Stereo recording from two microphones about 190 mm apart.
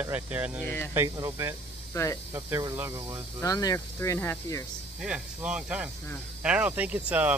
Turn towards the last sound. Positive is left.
turn(degrees=-10)  # may be behind; listen again after turning